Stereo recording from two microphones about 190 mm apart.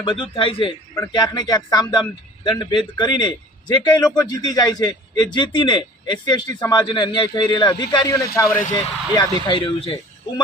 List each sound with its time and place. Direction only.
0.0 s a man's voice: 25° left (ahead or behind)